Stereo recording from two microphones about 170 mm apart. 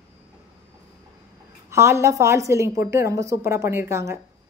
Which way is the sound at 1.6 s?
15° right (ahead or behind).